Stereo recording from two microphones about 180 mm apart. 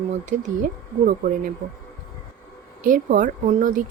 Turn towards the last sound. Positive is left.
turn(degrees=-45)  # may be behind; listen again after turning